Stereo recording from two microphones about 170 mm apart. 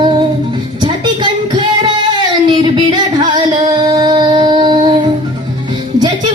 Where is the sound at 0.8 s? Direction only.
30° right (ahead or behind).